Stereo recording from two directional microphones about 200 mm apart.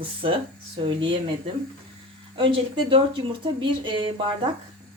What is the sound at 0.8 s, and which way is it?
Speech, 25° right (ahead or behind).